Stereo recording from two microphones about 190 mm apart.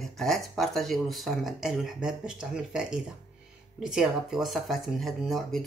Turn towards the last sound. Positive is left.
turn(degrees=0)  # may be behind; listen again after turning